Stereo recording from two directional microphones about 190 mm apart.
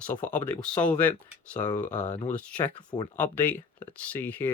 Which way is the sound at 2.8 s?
25° left (ahead or behind).